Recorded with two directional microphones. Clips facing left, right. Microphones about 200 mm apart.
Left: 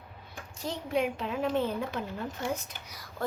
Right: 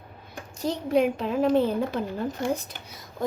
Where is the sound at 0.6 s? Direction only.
40° right (ahead or behind).